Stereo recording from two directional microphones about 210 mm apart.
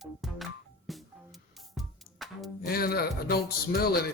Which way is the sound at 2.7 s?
45° left (ahead or behind).